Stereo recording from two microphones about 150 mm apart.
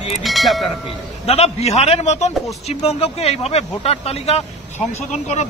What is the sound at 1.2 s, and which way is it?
Speech, 45° left (ahead or behind).